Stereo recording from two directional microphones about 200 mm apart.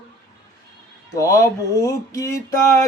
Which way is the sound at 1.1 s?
15° left (ahead or behind).